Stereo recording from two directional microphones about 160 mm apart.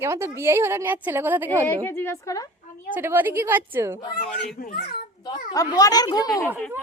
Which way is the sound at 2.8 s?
10° right (ahead or behind).